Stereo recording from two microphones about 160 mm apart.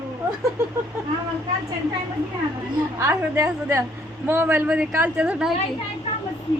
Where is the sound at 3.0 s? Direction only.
20° right (ahead or behind).